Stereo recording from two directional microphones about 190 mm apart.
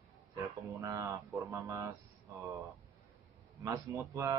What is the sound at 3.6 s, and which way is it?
Speech, 15° right (ahead or behind).